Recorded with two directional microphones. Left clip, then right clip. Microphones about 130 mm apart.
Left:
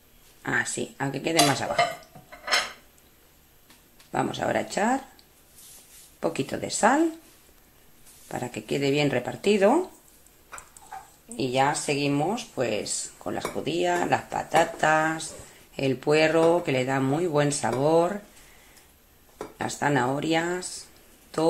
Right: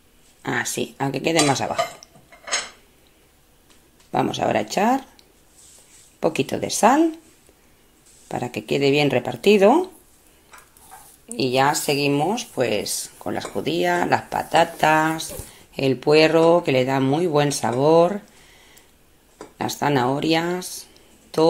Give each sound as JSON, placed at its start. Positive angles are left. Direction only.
{"t": 0.4, "sound": "speech", "side_deg": -30}
{"t": 4.1, "sound": "speech", "side_deg": -35}
{"t": 6.1, "sound": "speech", "side_deg": -35}
{"t": 8.3, "sound": "speech", "side_deg": -35}
{"t": 11.2, "sound": "speech", "side_deg": -40}
{"t": 19.6, "sound": "speech", "side_deg": -30}